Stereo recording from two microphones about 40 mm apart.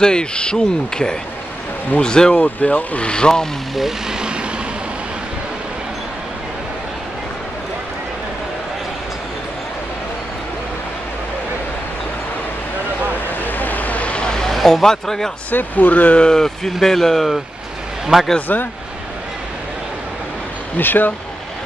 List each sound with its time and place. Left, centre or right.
0.0 s speech: left
2.3 s speech: left; by 3.4 s centre
4.1 s vehicle: right
13.4 s vehicle: left
14.2 s vehicle: centre
14.5 s speech: centre
15.5 s speech: left
16.2 s speech: centre
18.5 s speech: left
20.7 s speech: left